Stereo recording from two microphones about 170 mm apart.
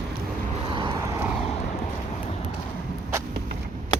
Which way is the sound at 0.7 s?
25° right (ahead or behind).